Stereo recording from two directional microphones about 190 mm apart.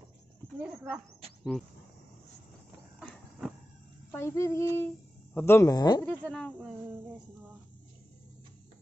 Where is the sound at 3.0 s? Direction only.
Centre (ahead or behind).